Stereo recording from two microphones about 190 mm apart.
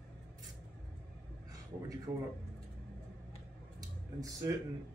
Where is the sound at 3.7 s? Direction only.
15° right (ahead or behind).